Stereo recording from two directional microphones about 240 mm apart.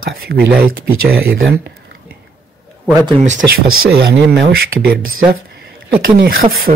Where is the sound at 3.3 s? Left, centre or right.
Right.